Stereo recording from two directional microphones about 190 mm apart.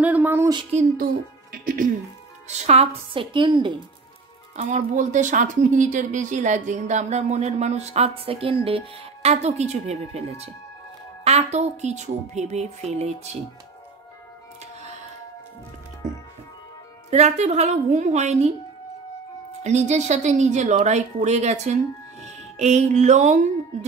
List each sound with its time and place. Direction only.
0.0 s a sound: 10° right (ahead or behind)
0.6 s speech: 35° right (ahead or behind)
0.9 s a woman's voice: 50° right (ahead or behind); by 3.7 s 25° right (ahead or behind)
4.6 s speech: 40° right (ahead or behind)
17.1 s speech: 35° right (ahead or behind)
19.6 s speech: 35° right (ahead or behind)